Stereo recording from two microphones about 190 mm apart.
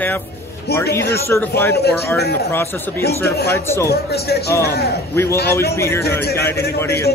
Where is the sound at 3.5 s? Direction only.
15° left (ahead or behind).